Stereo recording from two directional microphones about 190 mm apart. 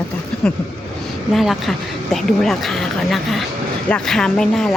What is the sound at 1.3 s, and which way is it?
A woman's voice, centre (ahead or behind).